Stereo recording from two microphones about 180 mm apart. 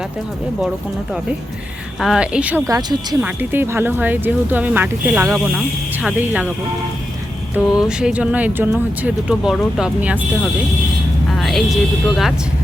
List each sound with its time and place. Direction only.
2.0 s speech: 5° right (ahead or behind)
2.6 s speech: 20° right (ahead or behind)
3.2 s speech: 10° right (ahead or behind)
7.5 s speech: 5° right (ahead or behind)
11.3 s a sound: centre (ahead or behind)